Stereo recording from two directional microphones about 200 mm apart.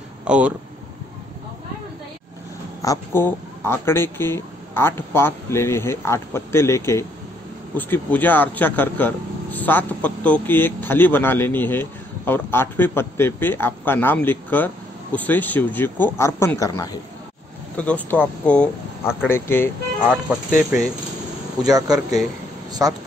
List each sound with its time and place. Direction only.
0.2 s speech: 5° right (ahead or behind)
2.8 s speech: 15° left (ahead or behind)
17.7 s speech: 5° left (ahead or behind)
21.6 s speech: 20° right (ahead or behind)
22.7 s a sound: 20° right (ahead or behind)